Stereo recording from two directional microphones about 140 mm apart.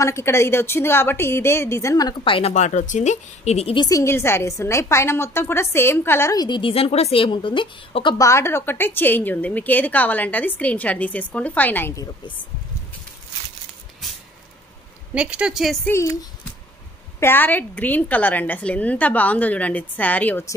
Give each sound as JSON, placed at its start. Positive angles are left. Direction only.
{"t": 0.0, "sound": "a woman's voice", "side_deg": 20}
{"t": 2.5, "sound": "speech", "side_deg": 60}
{"t": 3.7, "sound": "a woman's voice", "side_deg": 25}
{"t": 8.2, "sound": "a woman's voice", "side_deg": 20}
{"t": 15.1, "sound": "a woman's voice", "side_deg": -10}
{"t": 15.9, "sound": "a woman's voice", "side_deg": 20}